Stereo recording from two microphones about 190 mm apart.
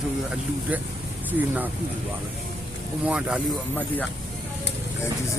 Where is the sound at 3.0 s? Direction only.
5° right (ahead or behind).